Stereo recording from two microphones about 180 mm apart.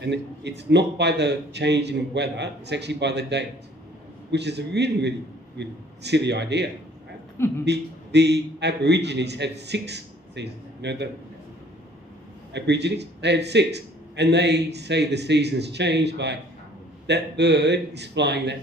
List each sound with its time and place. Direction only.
0.0 s a man's voice: 70° right (ahead or behind)
7.3 s a man's voice: 15° left (ahead or behind)
7.6 s a man's voice: 70° right (ahead or behind)
12.5 s a man's voice: 70° right (ahead or behind)